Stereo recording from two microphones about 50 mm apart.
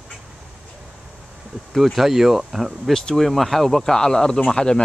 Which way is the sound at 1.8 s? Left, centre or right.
Centre.